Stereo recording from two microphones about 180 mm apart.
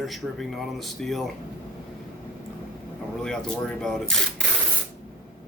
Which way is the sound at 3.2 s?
5° left (ahead or behind).